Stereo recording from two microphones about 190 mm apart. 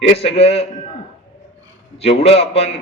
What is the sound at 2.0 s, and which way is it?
Speech, 30° left (ahead or behind).